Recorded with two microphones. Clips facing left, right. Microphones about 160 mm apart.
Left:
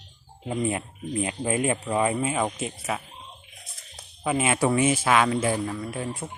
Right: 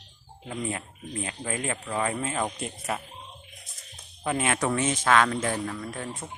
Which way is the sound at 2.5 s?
Centre (ahead or behind).